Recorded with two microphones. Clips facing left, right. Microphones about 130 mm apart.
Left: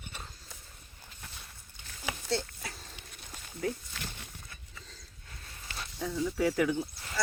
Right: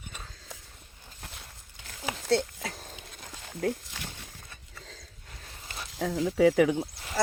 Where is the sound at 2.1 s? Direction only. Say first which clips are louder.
Right 8 dB; 85° right.